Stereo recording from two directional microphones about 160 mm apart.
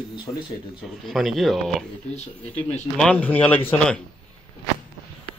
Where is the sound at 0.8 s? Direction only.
Centre (ahead or behind).